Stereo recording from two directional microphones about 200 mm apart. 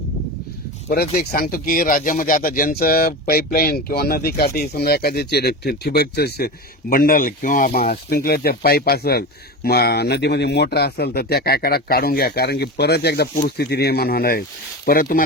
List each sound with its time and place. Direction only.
0.9 s a man's voice: 50° left (ahead or behind)